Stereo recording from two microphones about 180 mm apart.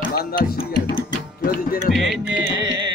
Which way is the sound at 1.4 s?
55° left (ahead or behind).